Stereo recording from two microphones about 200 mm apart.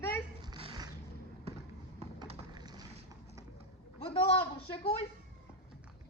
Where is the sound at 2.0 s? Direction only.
25° right (ahead or behind).